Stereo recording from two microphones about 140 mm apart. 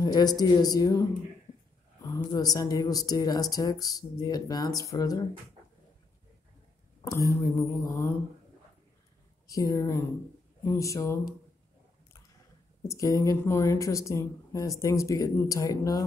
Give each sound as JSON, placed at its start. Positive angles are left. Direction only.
{"t": 0.0, "sound": "a woman's voice", "side_deg": 30}
{"t": 2.0, "sound": "a woman's voice", "side_deg": 25}
{"t": 7.1, "sound": "a woman's voice", "side_deg": 25}
{"t": 9.5, "sound": "a woman's voice", "side_deg": 25}
{"t": 12.8, "sound": "a woman's voice", "side_deg": 25}